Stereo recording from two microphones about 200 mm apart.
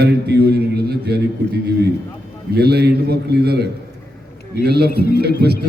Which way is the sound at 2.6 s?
55° right (ahead or behind).